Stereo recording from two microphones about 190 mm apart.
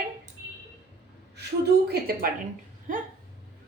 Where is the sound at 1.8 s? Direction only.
55° right (ahead or behind).